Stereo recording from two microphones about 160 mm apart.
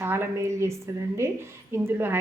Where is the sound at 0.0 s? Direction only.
15° right (ahead or behind).